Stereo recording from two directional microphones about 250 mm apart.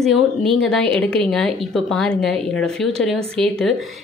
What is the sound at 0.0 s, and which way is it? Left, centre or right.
Speech, centre.